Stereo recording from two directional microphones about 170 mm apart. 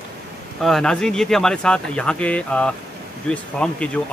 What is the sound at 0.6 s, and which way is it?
Speech, 5° left (ahead or behind).